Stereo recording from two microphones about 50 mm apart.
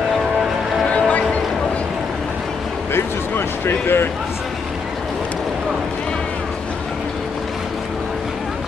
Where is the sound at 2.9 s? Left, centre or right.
Left.